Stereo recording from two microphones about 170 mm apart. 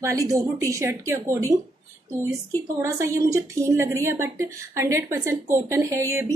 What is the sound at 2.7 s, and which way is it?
A woman's voice, 20° right (ahead or behind).